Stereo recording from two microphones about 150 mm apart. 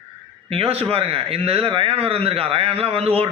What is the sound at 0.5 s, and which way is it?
A man's voice, 40° right (ahead or behind).